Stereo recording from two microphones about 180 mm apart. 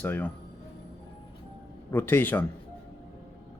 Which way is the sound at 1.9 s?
10° left (ahead or behind).